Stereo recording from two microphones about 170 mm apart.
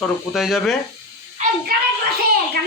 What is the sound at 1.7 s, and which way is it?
Speech, 65° right (ahead or behind).